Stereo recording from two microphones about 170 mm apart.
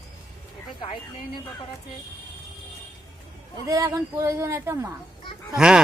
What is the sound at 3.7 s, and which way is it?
Speech, 20° right (ahead or behind).